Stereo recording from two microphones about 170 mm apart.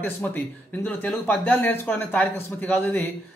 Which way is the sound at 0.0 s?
10° left (ahead or behind).